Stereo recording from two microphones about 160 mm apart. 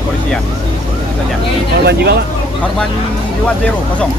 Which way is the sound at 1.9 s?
90° right.